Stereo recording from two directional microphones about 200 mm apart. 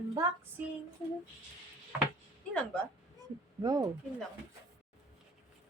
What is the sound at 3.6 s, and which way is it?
Speech, 20° right (ahead or behind).